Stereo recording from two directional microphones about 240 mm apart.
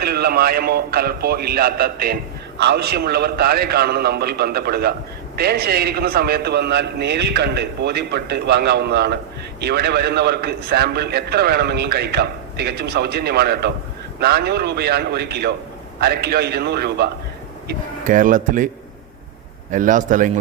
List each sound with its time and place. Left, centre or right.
0.0 s a man's voice: right
19.7 s a man's voice: right